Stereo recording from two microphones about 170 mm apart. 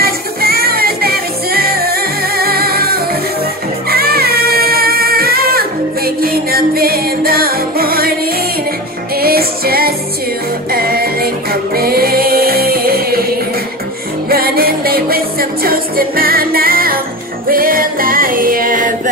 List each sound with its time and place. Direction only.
0.0 s music: 65° right (ahead or behind)
9.1 s music: 65° right (ahead or behind)
14.3 s music: 60° right (ahead or behind)